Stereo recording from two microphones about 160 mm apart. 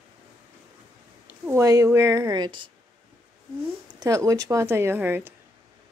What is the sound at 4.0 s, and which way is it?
Speech, 20° right (ahead or behind).